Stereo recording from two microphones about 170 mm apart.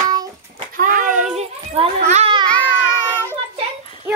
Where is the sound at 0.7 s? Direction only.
50° right (ahead or behind).